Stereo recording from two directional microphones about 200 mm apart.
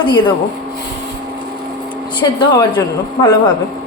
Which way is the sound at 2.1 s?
25° left (ahead or behind).